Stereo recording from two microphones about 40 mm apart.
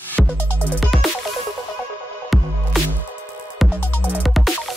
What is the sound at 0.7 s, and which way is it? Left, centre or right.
Music, centre.